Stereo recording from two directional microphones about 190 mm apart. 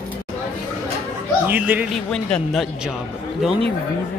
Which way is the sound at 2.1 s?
Centre (ahead or behind).